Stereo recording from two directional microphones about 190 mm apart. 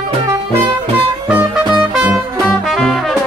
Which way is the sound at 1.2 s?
5° right (ahead or behind).